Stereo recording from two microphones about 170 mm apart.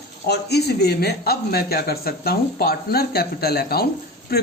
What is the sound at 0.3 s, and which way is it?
A man's voice, 70° left (ahead or behind).